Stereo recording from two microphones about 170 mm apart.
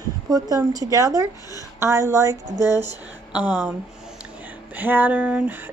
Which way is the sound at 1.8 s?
15° right (ahead or behind).